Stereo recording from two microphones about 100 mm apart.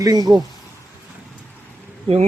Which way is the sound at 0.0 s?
40° right (ahead or behind).